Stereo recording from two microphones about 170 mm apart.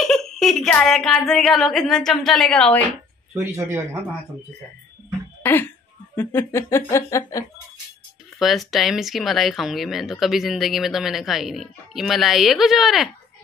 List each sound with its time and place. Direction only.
0.0 s speech: centre (ahead or behind)
3.4 s speech: 15° right (ahead or behind)
5.4 s speech: 10° left (ahead or behind)
8.4 s speech: centre (ahead or behind)